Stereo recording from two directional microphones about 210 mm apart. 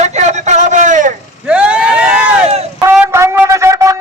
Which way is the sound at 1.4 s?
5° right (ahead or behind).